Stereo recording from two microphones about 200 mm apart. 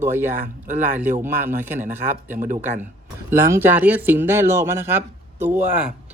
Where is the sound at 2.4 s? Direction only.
40° right (ahead or behind).